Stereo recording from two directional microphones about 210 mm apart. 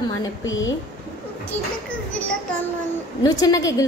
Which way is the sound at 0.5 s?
65° left (ahead or behind).